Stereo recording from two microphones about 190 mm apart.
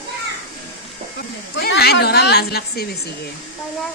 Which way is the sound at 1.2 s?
60° left (ahead or behind).